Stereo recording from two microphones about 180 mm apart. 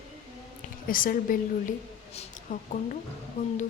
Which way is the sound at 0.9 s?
50° left (ahead or behind).